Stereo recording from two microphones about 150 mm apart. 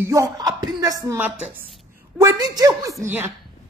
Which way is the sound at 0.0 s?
20° right (ahead or behind).